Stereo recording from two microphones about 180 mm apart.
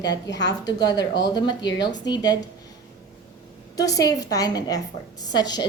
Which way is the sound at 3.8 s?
20° left (ahead or behind).